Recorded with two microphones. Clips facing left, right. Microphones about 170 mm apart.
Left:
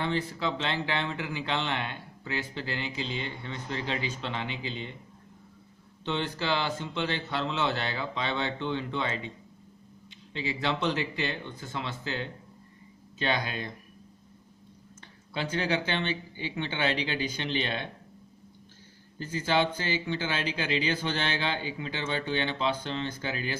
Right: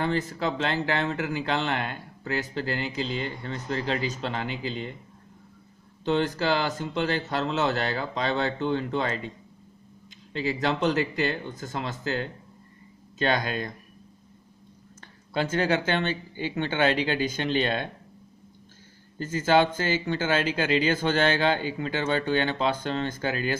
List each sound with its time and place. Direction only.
0.0 s speech: 45° right (ahead or behind)
6.0 s speech: 45° right (ahead or behind)
15.0 s speech: 45° right (ahead or behind)
19.1 s speech: 45° right (ahead or behind)